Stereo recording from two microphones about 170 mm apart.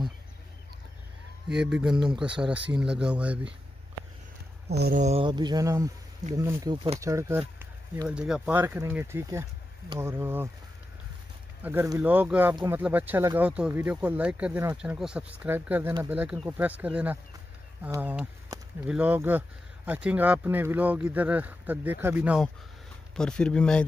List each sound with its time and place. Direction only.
1.5 s speech: 5° right (ahead or behind)
4.6 s speech: 75° right (ahead or behind)
4.9 s speech: 40° right (ahead or behind)
5.2 s speech: 25° right (ahead or behind)
11.6 s speech: 10° right (ahead or behind)
23.1 s speech: 5° left (ahead or behind)